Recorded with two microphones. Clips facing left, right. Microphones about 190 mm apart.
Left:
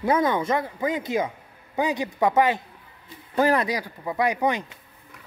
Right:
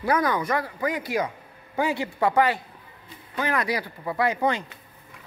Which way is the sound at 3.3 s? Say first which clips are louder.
Left 6 dB; 40° left (ahead or behind).